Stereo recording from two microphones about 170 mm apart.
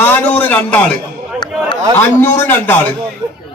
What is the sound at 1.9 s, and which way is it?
Speech, 15° left (ahead or behind).